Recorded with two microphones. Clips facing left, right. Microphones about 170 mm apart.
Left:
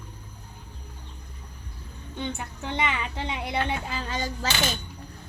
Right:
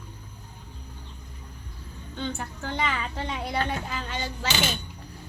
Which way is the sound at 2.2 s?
20° left (ahead or behind).